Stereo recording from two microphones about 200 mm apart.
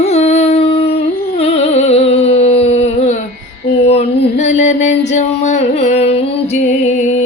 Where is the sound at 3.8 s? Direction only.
30° left (ahead or behind).